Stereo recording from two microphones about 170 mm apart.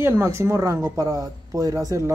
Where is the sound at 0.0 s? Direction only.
15° right (ahead or behind).